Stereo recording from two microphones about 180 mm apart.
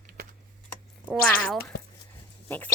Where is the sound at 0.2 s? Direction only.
60° right (ahead or behind).